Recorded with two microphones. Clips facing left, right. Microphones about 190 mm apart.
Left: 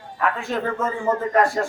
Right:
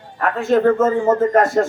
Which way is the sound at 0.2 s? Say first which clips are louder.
Right 8 dB; 50° right (ahead or behind).